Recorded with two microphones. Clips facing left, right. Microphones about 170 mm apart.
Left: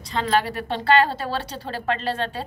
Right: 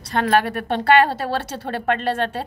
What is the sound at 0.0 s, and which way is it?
A woman's voice, 65° right (ahead or behind).